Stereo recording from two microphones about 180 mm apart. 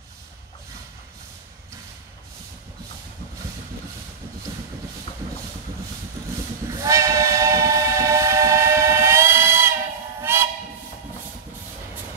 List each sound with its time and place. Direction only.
6.7 s train: 15° right (ahead or behind)